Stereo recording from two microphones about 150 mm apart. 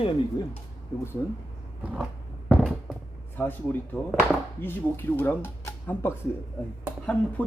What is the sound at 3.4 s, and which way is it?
Speech, 10° left (ahead or behind).